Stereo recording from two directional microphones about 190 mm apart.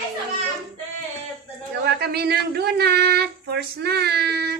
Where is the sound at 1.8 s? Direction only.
60° right (ahead or behind).